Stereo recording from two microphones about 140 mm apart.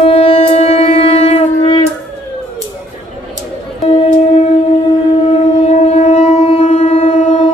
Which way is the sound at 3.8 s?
45° left (ahead or behind).